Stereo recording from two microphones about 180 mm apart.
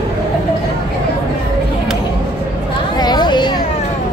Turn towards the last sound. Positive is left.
turn(degrees=25)  # may be behind; listen again after turning